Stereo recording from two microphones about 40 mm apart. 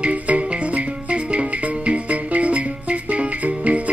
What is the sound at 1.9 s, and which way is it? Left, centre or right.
Music, right.